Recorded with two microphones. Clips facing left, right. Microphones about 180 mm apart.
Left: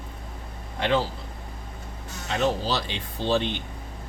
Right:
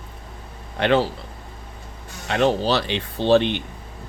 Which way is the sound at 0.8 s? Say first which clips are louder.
Right 5 dB; 70° right (ahead or behind).